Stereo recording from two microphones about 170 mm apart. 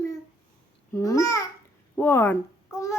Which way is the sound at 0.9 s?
20° left (ahead or behind).